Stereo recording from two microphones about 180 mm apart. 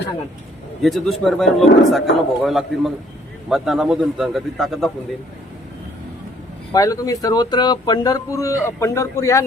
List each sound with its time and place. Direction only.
0.8 s a man's voice: centre (ahead or behind)
6.7 s a man's voice: 20° left (ahead or behind)